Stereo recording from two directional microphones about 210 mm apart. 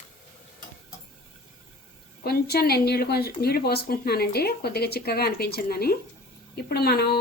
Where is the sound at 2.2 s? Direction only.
50° left (ahead or behind).